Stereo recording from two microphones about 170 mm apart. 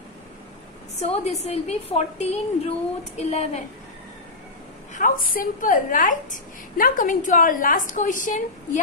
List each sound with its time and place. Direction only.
1.2 s a woman's voice: 40° left (ahead or behind)
4.9 s a woman's voice: 50° left (ahead or behind)